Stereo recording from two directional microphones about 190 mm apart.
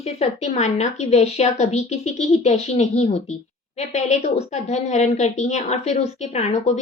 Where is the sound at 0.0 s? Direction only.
35° left (ahead or behind).